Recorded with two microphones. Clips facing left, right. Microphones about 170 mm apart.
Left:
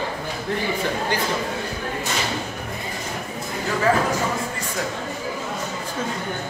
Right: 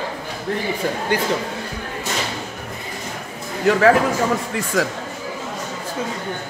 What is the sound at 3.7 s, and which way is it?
Speech, 75° right (ahead or behind).